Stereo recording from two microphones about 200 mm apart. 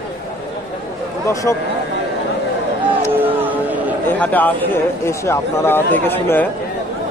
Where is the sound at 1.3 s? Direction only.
15° left (ahead or behind).